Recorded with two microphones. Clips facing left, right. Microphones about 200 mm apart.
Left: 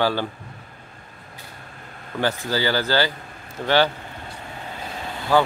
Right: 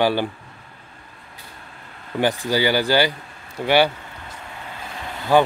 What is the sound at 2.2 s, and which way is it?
Speech, 15° right (ahead or behind).